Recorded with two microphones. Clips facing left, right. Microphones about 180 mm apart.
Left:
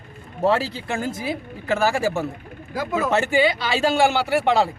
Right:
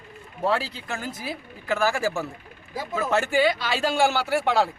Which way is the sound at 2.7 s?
85° left.